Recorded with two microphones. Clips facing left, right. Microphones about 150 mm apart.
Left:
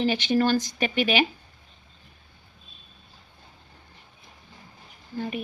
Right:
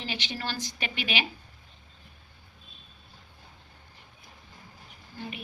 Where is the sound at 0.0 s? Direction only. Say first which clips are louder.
Left 13 dB; 50° left (ahead or behind).